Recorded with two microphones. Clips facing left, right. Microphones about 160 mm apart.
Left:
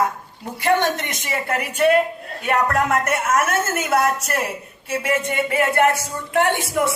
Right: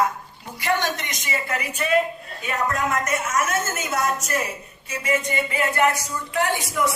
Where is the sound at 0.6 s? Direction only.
55° left (ahead or behind).